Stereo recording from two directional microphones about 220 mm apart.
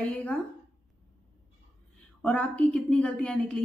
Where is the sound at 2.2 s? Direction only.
5° left (ahead or behind).